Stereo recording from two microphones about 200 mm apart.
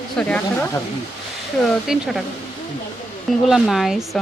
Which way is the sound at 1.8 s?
Centre (ahead or behind).